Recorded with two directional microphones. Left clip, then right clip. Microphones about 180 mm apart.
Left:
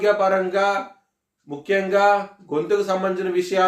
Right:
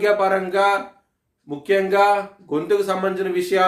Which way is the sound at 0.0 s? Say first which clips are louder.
Even; 25° right (ahead or behind).